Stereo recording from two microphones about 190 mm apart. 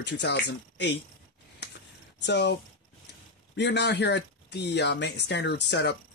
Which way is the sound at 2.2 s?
65° left (ahead or behind).